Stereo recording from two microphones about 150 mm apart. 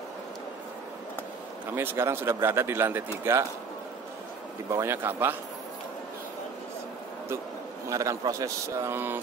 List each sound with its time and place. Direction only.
1.8 s speech: 15° right (ahead or behind)
4.6 s speech: 15° right (ahead or behind)
7.9 s a man's voice: 20° right (ahead or behind)